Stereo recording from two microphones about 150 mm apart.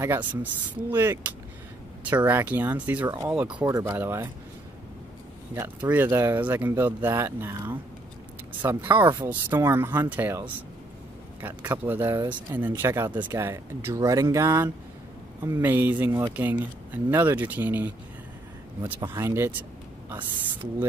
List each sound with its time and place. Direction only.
0.0 s speech: 15° right (ahead or behind)
5.5 s speech: 15° right (ahead or behind)